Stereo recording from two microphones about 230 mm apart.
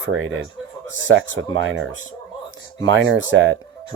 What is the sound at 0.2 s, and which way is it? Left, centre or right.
Speech, right.